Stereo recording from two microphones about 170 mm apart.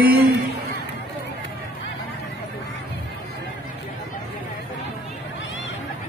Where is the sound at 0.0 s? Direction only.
65° right (ahead or behind).